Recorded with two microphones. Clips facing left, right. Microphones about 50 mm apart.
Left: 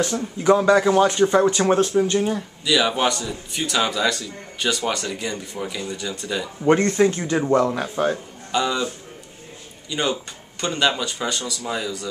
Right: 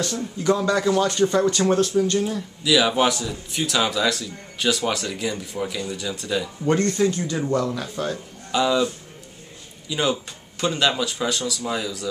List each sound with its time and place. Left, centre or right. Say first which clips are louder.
0.0 s speech: left 3 dB; left
2.6 s a man's voice: right 1 dB; centre
6.6 s speech: left 4 dB; left
8.5 s a man's voice: right 2 dB; centre